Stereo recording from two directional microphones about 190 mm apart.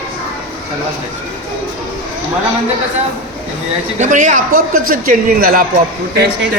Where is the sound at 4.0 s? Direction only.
40° right (ahead or behind).